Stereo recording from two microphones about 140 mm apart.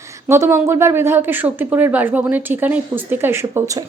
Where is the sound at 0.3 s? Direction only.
20° right (ahead or behind).